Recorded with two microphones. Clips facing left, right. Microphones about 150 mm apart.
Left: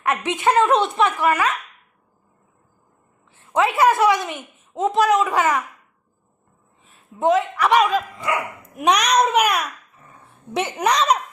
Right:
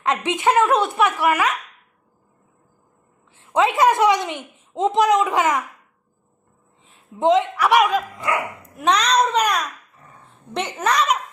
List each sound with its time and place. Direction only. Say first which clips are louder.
0.0 s a woman's voice: even; 15° right (ahead or behind)
3.3 s a woman's voice: right 1 dB; 15° right (ahead or behind)
6.8 s a sound: right 1 dB; 20° right (ahead or behind)
7.5 s a woman's voice: even; 10° right (ahead or behind)
8.7 s a child's voice: left 1 dB; 15° left (ahead or behind)